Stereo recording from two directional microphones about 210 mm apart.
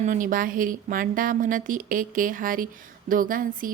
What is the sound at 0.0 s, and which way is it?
A woman's voice, 40° right (ahead or behind).